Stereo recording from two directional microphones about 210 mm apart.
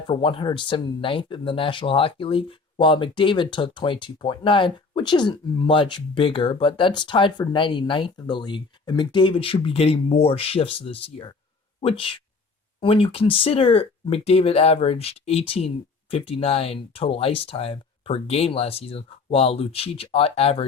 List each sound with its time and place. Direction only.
0.1 s speech: 25° left (ahead or behind)